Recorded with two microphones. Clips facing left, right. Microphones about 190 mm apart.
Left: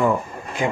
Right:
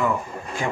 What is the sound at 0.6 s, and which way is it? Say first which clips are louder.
Speech: left 4 dB; 20° left (ahead or behind).